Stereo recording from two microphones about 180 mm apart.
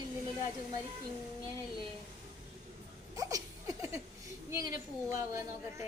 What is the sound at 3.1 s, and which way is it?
Laughter, 20° right (ahead or behind).